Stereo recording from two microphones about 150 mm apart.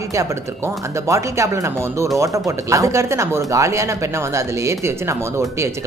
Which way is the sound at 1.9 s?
20° right (ahead or behind).